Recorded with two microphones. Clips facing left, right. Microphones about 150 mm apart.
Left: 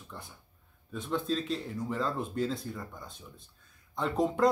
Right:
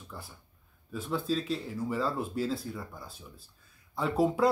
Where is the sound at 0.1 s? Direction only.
5° right (ahead or behind).